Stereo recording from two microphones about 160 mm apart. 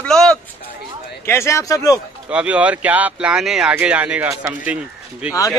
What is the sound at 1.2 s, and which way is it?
Speech, 15° left (ahead or behind).